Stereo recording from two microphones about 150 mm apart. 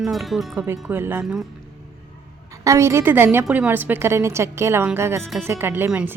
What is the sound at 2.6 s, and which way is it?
Speech, 20° right (ahead or behind).